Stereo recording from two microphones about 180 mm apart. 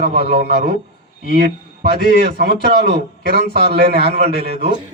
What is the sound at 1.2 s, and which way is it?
A man's voice, 60° right (ahead or behind).